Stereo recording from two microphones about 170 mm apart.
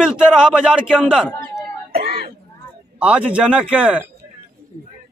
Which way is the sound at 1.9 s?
65° right (ahead or behind).